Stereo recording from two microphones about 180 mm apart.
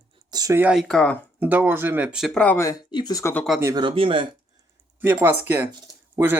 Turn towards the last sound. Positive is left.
turn(degrees=-15)  # may be behind; listen again after turning